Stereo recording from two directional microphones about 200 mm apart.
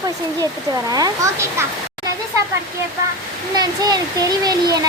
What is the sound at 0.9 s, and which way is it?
Speech, 20° right (ahead or behind).